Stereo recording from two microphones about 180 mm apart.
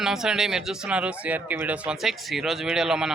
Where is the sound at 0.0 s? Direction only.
5° right (ahead or behind).